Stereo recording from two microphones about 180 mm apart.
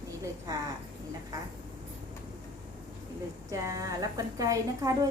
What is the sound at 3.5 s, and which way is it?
A woman's voice, 20° right (ahead or behind).